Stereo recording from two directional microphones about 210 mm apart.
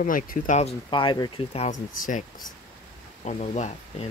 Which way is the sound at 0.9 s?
20° left (ahead or behind).